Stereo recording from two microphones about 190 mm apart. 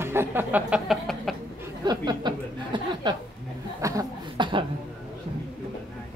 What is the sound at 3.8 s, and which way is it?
Chuckle, 15° right (ahead or behind).